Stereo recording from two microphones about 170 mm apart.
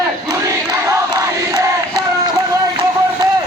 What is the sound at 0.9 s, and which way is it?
Crowd, 20° right (ahead or behind).